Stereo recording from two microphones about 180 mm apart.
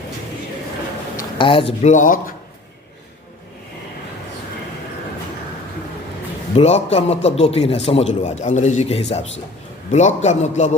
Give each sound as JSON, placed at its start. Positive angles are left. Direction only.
{"t": 1.1, "sound": "speech", "side_deg": 30}
{"t": 6.6, "sound": "a man's voice", "side_deg": 35}